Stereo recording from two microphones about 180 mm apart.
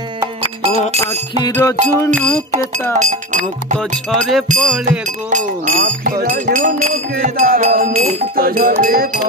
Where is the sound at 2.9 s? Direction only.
45° right (ahead or behind).